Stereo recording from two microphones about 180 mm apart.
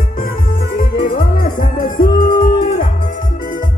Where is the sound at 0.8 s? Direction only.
50° left (ahead or behind).